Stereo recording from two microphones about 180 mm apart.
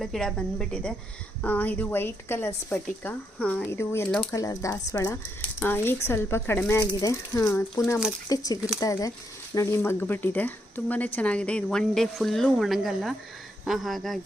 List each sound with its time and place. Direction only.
0.0 s a woman's voice: centre (ahead or behind)